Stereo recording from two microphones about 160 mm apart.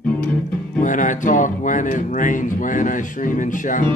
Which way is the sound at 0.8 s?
55° left (ahead or behind).